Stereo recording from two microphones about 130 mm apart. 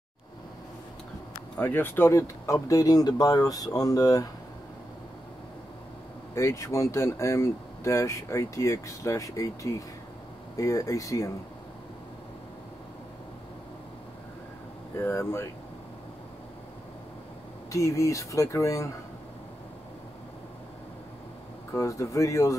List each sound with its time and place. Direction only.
1.6 s speech: 15° left (ahead or behind)
6.3 s speech: 25° left (ahead or behind)
15.0 s speech: 20° left (ahead or behind)
17.6 s speech: 25° left (ahead or behind)
21.7 s speech: 25° left (ahead or behind)